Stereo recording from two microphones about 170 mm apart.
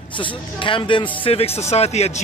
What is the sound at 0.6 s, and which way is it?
Speech, 30° left (ahead or behind).